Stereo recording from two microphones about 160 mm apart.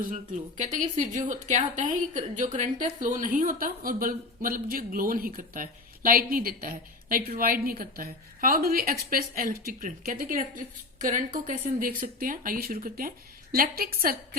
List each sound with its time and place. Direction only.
0.0 s a woman's voice: 55° right (ahead or behind)